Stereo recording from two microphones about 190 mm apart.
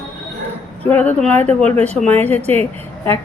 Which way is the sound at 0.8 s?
10° left (ahead or behind).